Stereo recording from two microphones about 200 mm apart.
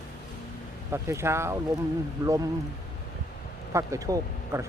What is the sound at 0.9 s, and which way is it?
Speech, 15° right (ahead or behind).